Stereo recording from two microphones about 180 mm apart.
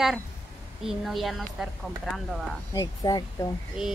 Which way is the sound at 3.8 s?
5° right (ahead or behind).